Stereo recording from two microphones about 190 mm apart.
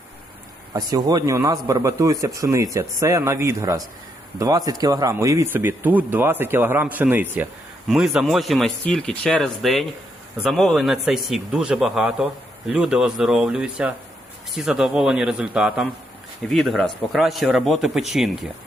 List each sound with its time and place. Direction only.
0.7 s speech: 20° right (ahead or behind); by 18.0 s centre (ahead or behind)